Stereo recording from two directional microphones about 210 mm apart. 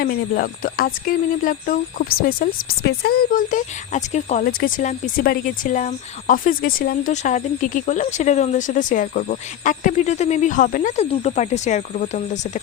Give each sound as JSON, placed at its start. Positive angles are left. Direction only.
{"t": 0.0, "sound": "speech", "side_deg": 45}